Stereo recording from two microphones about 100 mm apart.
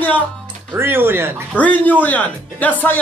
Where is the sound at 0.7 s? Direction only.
20° right (ahead or behind).